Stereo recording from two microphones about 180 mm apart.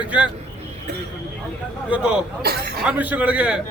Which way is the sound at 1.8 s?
5° right (ahead or behind).